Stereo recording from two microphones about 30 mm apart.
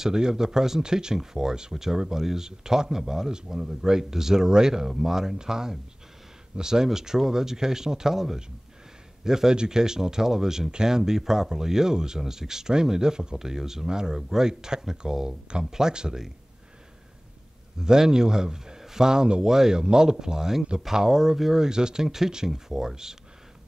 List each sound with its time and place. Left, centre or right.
0.0 s speech: right
15.9 s speech: right
17.7 s speech: right
19.4 s speech: centre
21.6 s speech: right